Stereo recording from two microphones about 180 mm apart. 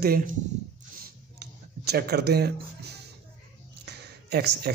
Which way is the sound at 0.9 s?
60° right (ahead or behind).